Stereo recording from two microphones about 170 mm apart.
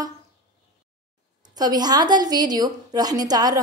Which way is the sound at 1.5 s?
25° right (ahead or behind).